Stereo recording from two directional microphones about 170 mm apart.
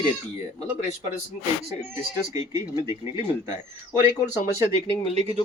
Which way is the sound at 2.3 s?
20° right (ahead or behind).